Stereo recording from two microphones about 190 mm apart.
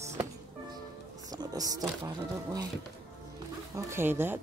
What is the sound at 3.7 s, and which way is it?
Speech, 15° right (ahead or behind).